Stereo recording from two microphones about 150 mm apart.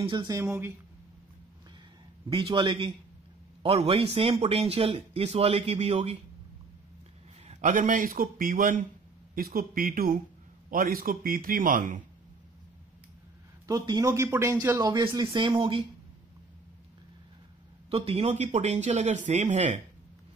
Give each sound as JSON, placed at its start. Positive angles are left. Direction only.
{"t": 0.0, "sound": "speech", "side_deg": -30}
{"t": 0.4, "sound": "speech", "side_deg": -15}
{"t": 2.2, "sound": "speech", "side_deg": -35}
{"t": 7.4, "sound": "a man's voice", "side_deg": -60}
{"t": 9.3, "sound": "a man's voice", "side_deg": -75}
{"t": 13.7, "sound": "speech", "side_deg": -25}
{"t": 17.8, "sound": "a man's voice", "side_deg": -40}